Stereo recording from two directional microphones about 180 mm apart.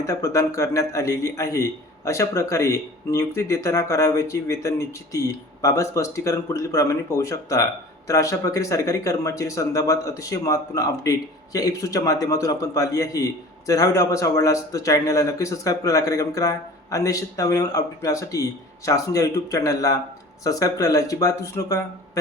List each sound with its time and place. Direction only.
0.0 s speech: 15° left (ahead or behind)